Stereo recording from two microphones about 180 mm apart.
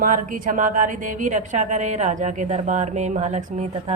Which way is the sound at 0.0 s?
50° right (ahead or behind).